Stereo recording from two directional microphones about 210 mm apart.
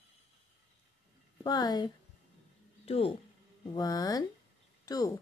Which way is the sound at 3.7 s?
20° left (ahead or behind).